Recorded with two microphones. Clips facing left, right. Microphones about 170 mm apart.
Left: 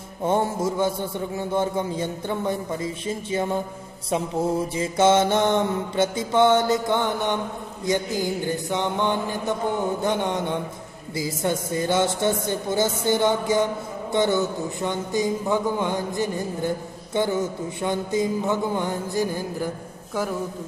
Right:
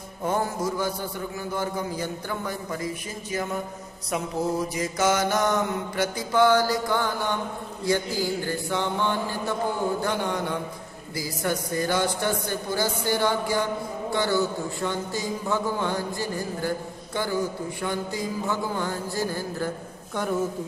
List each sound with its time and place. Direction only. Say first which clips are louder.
0.2 s a man's voice: left 4 dB; 25° left (ahead or behind)